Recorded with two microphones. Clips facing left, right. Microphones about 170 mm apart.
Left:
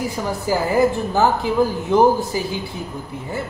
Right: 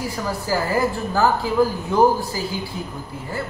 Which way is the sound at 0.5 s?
20° left (ahead or behind).